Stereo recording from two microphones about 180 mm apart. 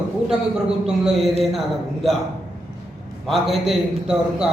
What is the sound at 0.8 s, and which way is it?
A man's voice, 5° right (ahead or behind).